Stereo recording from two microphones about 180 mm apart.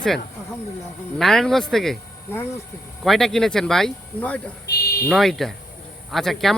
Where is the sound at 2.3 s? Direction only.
10° left (ahead or behind).